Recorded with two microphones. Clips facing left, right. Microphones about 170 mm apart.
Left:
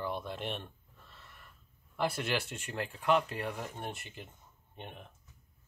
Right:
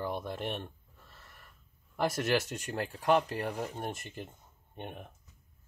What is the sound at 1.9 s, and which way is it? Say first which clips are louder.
Speech: right 4 dB; 45° right (ahead or behind).